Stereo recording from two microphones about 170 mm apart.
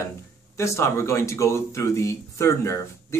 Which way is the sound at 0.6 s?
15° left (ahead or behind).